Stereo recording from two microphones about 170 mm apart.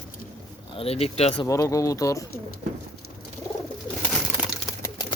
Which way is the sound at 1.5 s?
20° left (ahead or behind).